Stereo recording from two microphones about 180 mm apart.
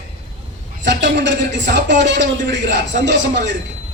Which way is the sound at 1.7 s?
75° right (ahead or behind).